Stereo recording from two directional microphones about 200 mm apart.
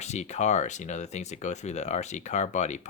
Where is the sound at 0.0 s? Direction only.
35° left (ahead or behind).